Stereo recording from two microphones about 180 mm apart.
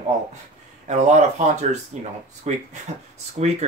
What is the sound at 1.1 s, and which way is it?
Speech, 40° right (ahead or behind).